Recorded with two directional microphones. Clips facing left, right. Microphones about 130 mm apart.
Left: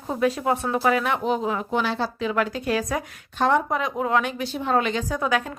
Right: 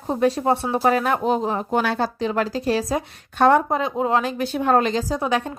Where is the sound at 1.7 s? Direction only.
50° right (ahead or behind).